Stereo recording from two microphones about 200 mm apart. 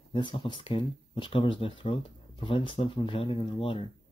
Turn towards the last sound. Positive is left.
turn(degrees=25)  # may be behind; listen again after turning